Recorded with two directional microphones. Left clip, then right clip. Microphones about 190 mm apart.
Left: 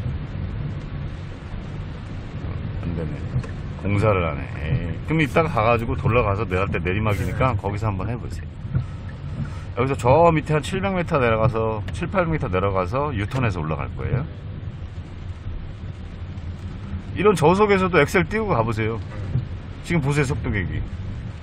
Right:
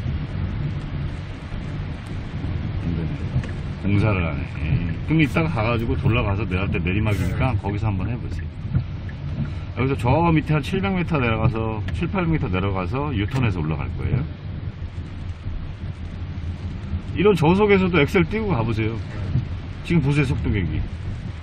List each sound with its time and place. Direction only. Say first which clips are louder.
3.8 s speech: left 4 dB; 25° left (ahead or behind)
9.8 s speech: left 5 dB; 20° left (ahead or behind)
17.2 s speech: left 1 dB; 20° left (ahead or behind)
20.1 s speech: even; 30° left (ahead or behind)